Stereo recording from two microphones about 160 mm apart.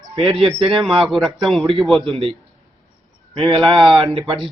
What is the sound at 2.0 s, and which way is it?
A man's voice, 35° right (ahead or behind).